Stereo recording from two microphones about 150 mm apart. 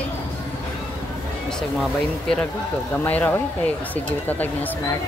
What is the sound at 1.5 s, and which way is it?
Speech, 5° left (ahead or behind).